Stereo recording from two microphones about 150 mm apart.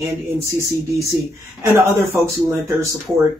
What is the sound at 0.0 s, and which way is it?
Speech, 20° right (ahead or behind).